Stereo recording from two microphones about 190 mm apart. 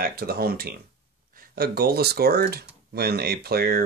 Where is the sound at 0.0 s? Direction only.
55° right (ahead or behind).